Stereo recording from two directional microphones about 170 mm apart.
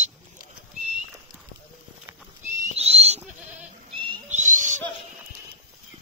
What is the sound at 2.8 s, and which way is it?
Goat, 35° right (ahead or behind).